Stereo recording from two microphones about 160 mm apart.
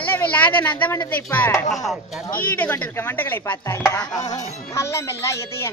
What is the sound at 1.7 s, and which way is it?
Speech, centre (ahead or behind).